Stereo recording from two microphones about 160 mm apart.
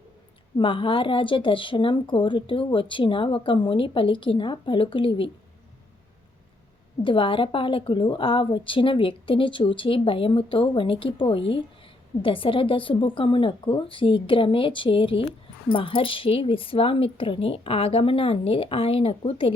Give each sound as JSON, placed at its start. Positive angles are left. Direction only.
{"t": 0.5, "sound": "speech", "side_deg": 30}
{"t": 7.0, "sound": "speech", "side_deg": 30}